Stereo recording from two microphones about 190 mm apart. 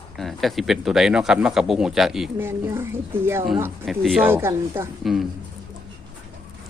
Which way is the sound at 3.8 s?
Centre (ahead or behind).